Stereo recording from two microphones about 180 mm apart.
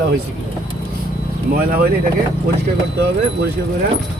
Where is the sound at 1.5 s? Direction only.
55° right (ahead or behind).